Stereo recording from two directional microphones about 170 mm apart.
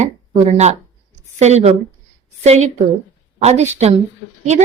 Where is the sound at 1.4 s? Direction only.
40° right (ahead or behind).